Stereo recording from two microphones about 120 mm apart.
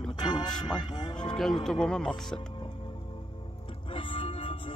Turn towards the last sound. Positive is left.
turn(degrees=50)  # may be behind; listen again after turning